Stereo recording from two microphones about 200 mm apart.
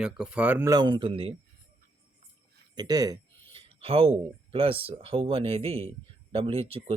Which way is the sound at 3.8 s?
30° right (ahead or behind).